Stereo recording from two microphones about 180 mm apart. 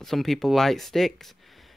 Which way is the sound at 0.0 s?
Centre (ahead or behind).